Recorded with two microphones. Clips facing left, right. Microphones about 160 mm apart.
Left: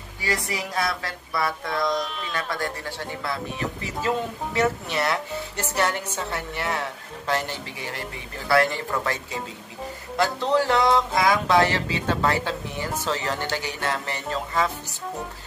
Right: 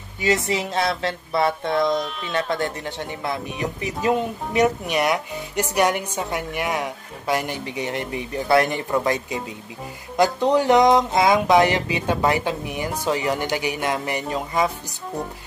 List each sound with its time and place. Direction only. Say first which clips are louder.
0.5 s speech: right 5 dB; 25° right (ahead or behind)
1.9 s speech: right 3 dB; centre (ahead or behind)
2.3 s a woman's voice: right 6 dB; 25° right (ahead or behind)